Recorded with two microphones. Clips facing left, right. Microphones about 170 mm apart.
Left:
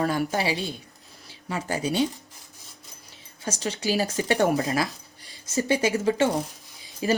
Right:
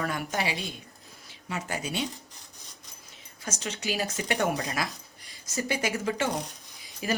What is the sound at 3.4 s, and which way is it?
Speech, 30° left (ahead or behind).